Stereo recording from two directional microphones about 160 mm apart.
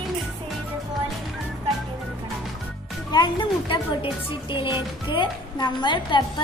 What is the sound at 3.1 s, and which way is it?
Speech, 30° left (ahead or behind).